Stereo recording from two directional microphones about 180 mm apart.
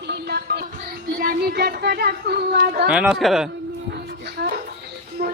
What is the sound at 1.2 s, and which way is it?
Speech, 60° right (ahead or behind).